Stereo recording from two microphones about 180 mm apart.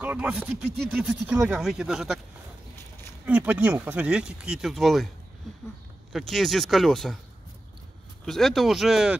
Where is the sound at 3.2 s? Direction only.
10° right (ahead or behind).